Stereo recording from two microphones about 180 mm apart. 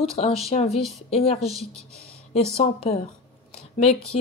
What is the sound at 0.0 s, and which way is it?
Speech, 35° left (ahead or behind).